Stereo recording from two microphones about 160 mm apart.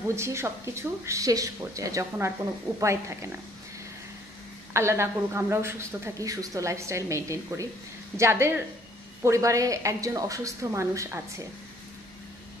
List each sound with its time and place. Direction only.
0.1 s a woman's voice: 15° right (ahead or behind)
4.7 s a woman's voice: 15° right (ahead or behind)